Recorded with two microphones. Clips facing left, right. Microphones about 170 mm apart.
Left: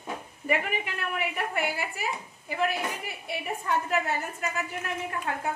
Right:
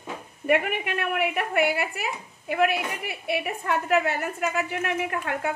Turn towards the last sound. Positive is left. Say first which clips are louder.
# right 4 dB
turn(degrees=-75)  # may be behind; listen again after turning